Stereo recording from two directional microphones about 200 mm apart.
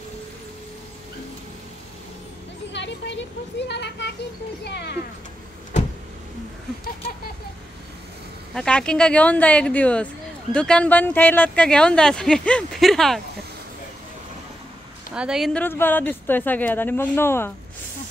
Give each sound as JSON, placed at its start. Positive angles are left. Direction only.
{"t": 2.7, "sound": "a child's voice", "side_deg": 65}
{"t": 8.5, "sound": "speech", "side_deg": 5}
{"t": 15.1, "sound": "speech", "side_deg": -5}